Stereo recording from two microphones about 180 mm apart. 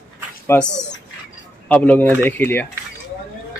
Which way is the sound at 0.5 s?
10° left (ahead or behind).